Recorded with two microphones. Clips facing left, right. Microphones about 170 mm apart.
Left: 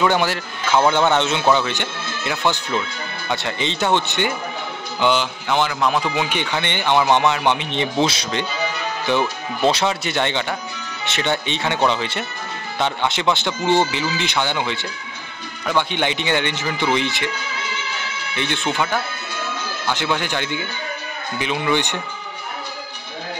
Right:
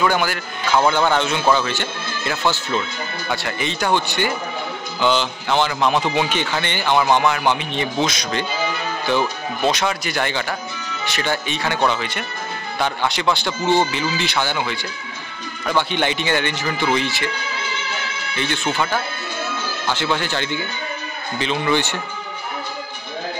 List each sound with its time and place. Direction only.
0.0 s speech: 25° left (ahead or behind)
5.0 s speech: 10° left (ahead or behind)
9.6 s speech: 30° left (ahead or behind)
15.9 s speech: 15° left (ahead or behind)
18.3 s speech: 20° left (ahead or behind)
19.9 s speech: 15° left (ahead or behind)